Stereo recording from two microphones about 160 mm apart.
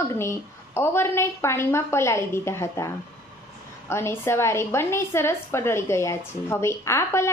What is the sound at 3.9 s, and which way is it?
A woman's voice, 15° left (ahead or behind).